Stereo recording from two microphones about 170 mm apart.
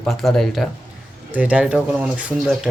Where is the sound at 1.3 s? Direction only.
10° right (ahead or behind).